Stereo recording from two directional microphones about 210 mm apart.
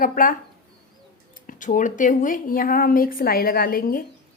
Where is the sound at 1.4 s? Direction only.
40° left (ahead or behind).